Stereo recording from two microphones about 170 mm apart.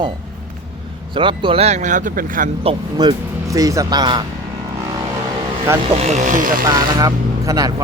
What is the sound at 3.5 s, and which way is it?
Speech, 20° right (ahead or behind).